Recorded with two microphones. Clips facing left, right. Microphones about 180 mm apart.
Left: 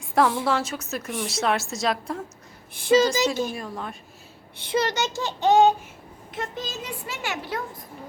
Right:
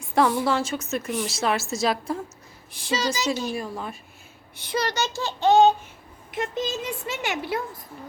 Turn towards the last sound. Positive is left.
turn(degrees=-20)  # may be behind; listen again after turning